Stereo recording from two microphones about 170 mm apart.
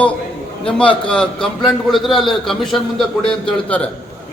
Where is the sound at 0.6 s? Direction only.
5° left (ahead or behind).